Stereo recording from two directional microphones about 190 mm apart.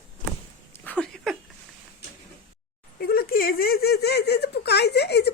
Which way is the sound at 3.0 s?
50° left (ahead or behind).